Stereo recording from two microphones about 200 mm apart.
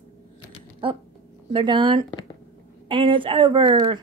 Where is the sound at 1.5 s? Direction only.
25° right (ahead or behind).